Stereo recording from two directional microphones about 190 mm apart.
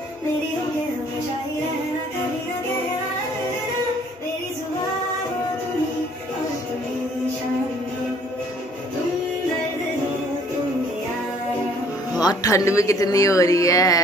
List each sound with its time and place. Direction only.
12.2 s speech: 20° left (ahead or behind)